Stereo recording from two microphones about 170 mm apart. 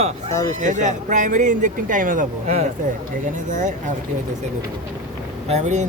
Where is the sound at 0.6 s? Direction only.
45° right (ahead or behind).